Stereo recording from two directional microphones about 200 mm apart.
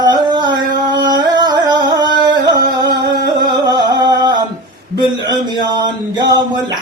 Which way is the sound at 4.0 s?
20° right (ahead or behind).